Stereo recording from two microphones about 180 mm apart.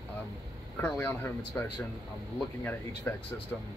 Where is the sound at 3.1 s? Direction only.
10° left (ahead or behind).